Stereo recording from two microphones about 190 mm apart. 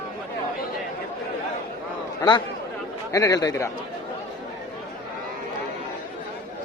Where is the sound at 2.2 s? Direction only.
20° left (ahead or behind).